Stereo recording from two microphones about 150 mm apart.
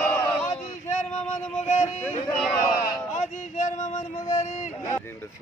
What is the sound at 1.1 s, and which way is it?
Music, 45° left (ahead or behind).